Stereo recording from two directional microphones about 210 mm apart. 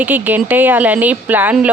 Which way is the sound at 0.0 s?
10° right (ahead or behind).